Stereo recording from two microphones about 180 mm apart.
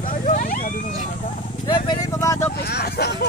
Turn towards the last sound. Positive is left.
turn(degrees=65)  # may be behind; listen again after turning